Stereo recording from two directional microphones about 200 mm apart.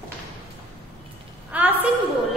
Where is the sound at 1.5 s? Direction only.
5° right (ahead or behind).